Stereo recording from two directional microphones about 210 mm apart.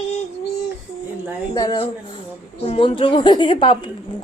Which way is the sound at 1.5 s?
20° left (ahead or behind).